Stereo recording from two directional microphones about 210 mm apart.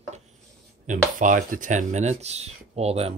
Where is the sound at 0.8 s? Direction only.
35° right (ahead or behind).